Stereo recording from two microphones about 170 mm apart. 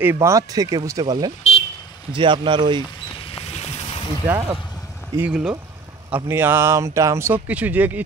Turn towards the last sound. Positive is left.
turn(degrees=-10)  # may be behind; listen again after turning